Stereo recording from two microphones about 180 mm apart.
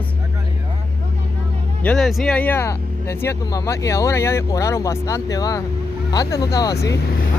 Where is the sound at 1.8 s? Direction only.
5° left (ahead or behind).